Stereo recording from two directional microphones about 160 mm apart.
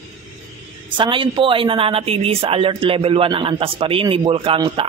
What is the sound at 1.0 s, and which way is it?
Speech, 30° right (ahead or behind).